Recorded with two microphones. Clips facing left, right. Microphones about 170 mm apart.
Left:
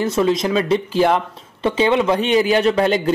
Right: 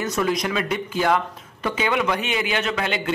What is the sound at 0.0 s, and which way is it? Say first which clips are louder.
Speech: left 6 dB; 25° left (ahead or behind).